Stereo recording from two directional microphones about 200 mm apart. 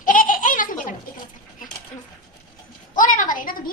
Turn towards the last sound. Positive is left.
turn(degrees=45)  # may be behind; listen again after turning